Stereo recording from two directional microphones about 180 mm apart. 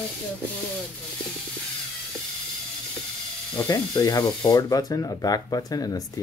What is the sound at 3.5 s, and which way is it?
Speech, 20° left (ahead or behind).